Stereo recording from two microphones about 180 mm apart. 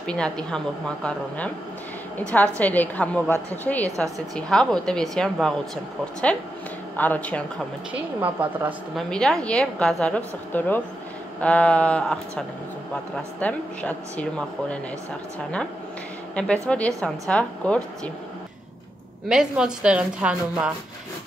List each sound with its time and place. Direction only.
0.0 s a woman's voice: 5° left (ahead or behind)
3.8 s a woman's voice: 20° right (ahead or behind)
4.4 s a woman's voice: 5° left (ahead or behind)
7.0 s a woman's voice: 10° left (ahead or behind)
7.9 s a woman's voice: 10° right (ahead or behind)
9.1 s a woman's voice: 5° left (ahead or behind)
16.6 s a woman's voice: 5° left (ahead or behind)
19.2 s a woman's voice: 5° right (ahead or behind)